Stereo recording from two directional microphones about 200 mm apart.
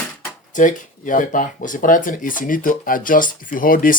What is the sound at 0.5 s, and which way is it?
Speech, 40° left (ahead or behind).